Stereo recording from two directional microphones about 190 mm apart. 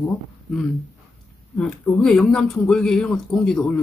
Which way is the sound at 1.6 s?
5° left (ahead or behind).